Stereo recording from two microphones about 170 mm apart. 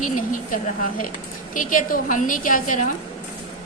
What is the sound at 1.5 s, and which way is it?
A woman's voice, 50° left (ahead or behind).